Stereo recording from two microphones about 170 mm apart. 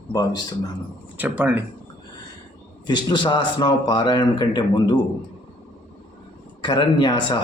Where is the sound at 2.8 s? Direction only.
25° left (ahead or behind).